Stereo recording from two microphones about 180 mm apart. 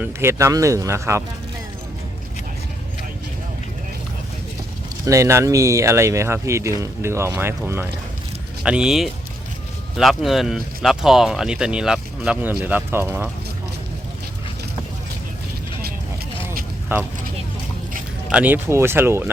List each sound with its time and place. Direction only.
0.0 s speech: 15° right (ahead or behind)
5.0 s speech: 15° right (ahead or behind)
16.9 s speech: 10° right (ahead or behind)
18.3 s speech: 10° right (ahead or behind)